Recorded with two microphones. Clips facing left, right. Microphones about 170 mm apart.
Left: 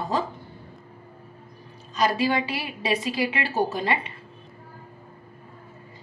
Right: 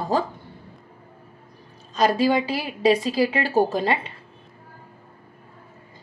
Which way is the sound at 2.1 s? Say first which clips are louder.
Right 4 dB; 40° right (ahead or behind).